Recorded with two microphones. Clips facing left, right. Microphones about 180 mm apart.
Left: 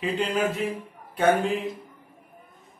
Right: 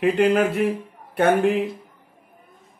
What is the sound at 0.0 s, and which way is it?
A man's voice, 65° right (ahead or behind).